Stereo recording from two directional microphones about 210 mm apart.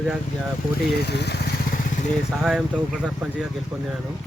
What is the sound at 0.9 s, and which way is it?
Vehicle, 50° left (ahead or behind).